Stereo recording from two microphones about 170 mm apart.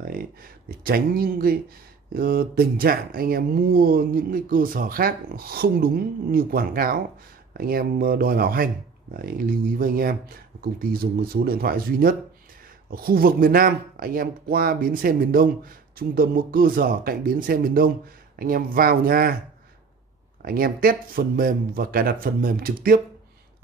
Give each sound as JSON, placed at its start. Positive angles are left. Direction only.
{"t": 0.0, "sound": "speech", "side_deg": -60}
{"t": 20.4, "sound": "speech", "side_deg": -60}